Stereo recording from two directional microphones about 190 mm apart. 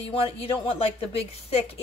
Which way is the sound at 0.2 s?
30° left (ahead or behind).